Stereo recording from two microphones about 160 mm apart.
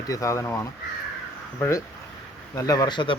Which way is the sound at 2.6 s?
20° left (ahead or behind).